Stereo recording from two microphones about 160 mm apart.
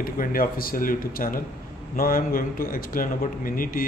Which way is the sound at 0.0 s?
60° left (ahead or behind).